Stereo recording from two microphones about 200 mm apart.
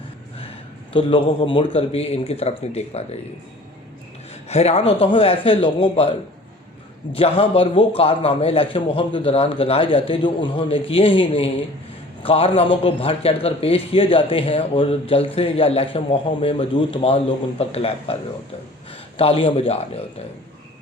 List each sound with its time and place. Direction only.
0.9 s a man's voice: 25° left (ahead or behind)
4.4 s a man's voice: 30° left (ahead or behind)